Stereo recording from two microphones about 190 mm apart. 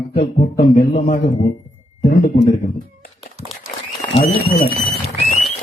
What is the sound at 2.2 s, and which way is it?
Speech, 45° left (ahead or behind).